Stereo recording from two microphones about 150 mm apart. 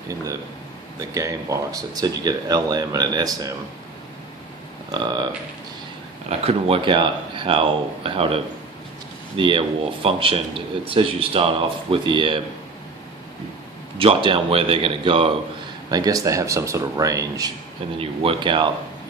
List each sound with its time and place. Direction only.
0.9 s speech: 20° right (ahead or behind)
4.9 s speech: 30° right (ahead or behind)
6.4 s speech: 35° right (ahead or behind)
9.4 s speech: 35° right (ahead or behind)
13.9 s speech: 35° right (ahead or behind)
15.9 s speech: 25° right (ahead or behind)
17.9 s speech: 35° right (ahead or behind)